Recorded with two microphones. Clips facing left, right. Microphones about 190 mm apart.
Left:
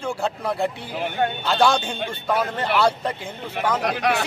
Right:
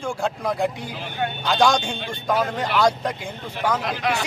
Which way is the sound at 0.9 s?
55° left (ahead or behind).